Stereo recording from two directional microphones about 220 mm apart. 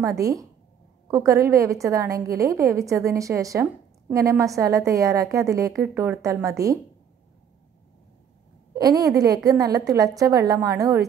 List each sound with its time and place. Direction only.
0.0 s a woman's voice: 15° right (ahead or behind)
8.7 s a woman's voice: 15° right (ahead or behind)